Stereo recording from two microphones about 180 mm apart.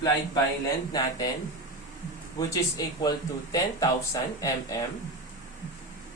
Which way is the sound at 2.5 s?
20° left (ahead or behind).